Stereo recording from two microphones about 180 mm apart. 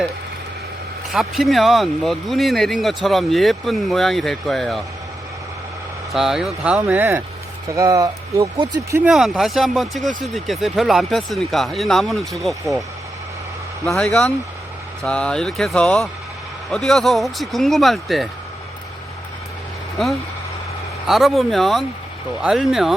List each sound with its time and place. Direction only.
1.1 s speech: centre (ahead or behind)
6.1 s speech: centre (ahead or behind); by 9.0 s 20° right (ahead or behind)
9.0 s speech: centre (ahead or behind)
13.8 s speech: centre (ahead or behind)
21.1 s speech: centre (ahead or behind)